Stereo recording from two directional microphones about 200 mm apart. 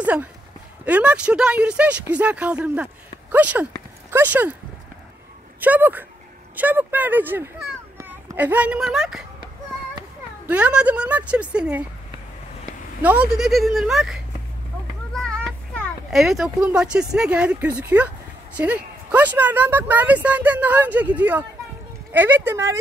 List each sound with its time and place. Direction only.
0.0 s speech: 10° right (ahead or behind)
5.6 s speech: 10° right (ahead or behind)
10.5 s speech: 5° right (ahead or behind)
13.0 s a child's voice: 5° right (ahead or behind)